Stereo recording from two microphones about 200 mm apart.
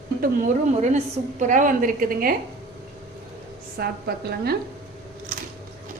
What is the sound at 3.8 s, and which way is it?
Speech, 50° right (ahead or behind).